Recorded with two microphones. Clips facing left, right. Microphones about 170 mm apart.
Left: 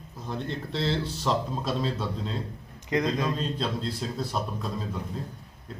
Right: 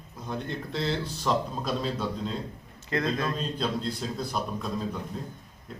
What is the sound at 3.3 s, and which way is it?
Speech, centre (ahead or behind).